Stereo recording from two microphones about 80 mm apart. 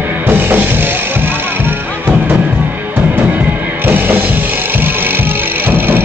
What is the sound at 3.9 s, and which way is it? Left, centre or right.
Music, right.